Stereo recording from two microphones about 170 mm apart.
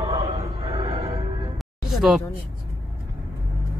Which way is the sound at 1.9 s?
Centre (ahead or behind).